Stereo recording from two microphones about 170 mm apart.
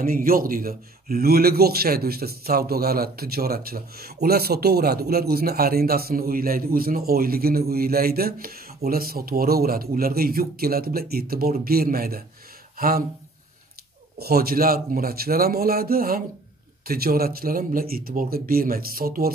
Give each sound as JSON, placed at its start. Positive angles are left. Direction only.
{"t": 0.0, "sound": "a man's voice", "side_deg": -60}
{"t": 14.1, "sound": "a man's voice", "side_deg": -65}